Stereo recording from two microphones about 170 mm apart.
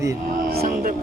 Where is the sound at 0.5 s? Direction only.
60° right (ahead or behind).